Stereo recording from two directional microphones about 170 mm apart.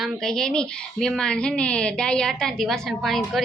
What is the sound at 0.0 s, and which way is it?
Speech, 5° left (ahead or behind).